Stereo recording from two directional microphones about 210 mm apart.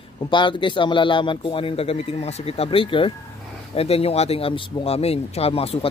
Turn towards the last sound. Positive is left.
turn(degrees=30)  # may be behind; listen again after turning